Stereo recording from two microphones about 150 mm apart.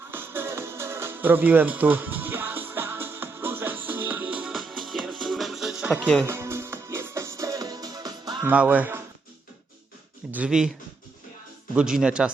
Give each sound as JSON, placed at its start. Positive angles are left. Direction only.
{"t": 0.1, "sound": "music", "side_deg": -15}
{"t": 6.2, "sound": "music", "side_deg": -15}
{"t": 8.4, "sound": "speech", "side_deg": -10}
{"t": 10.3, "sound": "speech", "side_deg": -5}